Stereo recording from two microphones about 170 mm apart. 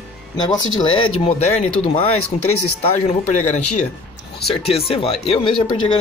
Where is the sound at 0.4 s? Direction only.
25° left (ahead or behind).